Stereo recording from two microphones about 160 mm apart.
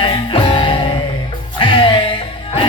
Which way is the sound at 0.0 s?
30° left (ahead or behind).